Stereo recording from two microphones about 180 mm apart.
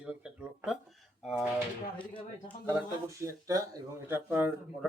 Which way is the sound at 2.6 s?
15° right (ahead or behind).